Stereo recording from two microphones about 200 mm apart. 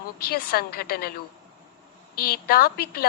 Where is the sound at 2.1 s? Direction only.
50° left (ahead or behind).